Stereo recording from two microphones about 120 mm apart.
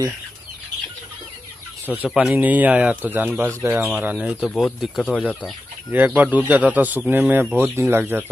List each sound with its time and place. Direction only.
2.0 s speech: 10° right (ahead or behind); by 5.5 s 10° left (ahead or behind)
5.9 s speech: 15° right (ahead or behind)